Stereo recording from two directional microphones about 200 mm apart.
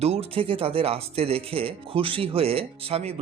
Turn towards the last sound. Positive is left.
turn(degrees=-30)  # may be behind; listen again after turning